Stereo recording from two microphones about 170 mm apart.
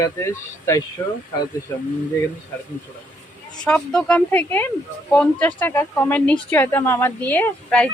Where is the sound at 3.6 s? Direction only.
5° left (ahead or behind).